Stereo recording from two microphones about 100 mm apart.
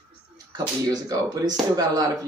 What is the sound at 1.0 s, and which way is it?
Speech, 40° right (ahead or behind).